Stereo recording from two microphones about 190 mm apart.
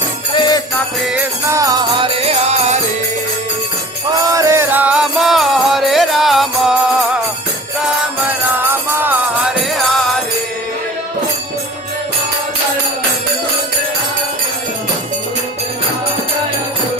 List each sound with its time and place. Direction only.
0.3 s jingle bell: 25° left (ahead or behind)
1.0 s music: 5° right (ahead or behind)
2.2 s music: 35° right (ahead or behind)
4.3 s music: 15° right (ahead or behind); by 6.7 s centre (ahead or behind)
8.5 s music: 10° right (ahead or behind)